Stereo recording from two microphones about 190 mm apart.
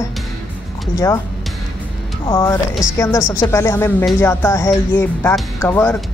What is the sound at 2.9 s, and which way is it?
Speech, 20° left (ahead or behind).